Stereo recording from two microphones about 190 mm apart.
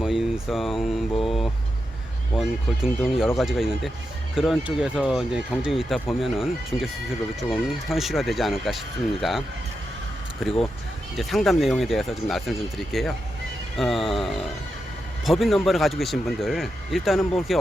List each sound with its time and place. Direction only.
0.0 s speech: centre (ahead or behind)
10.4 s speech: centre (ahead or behind)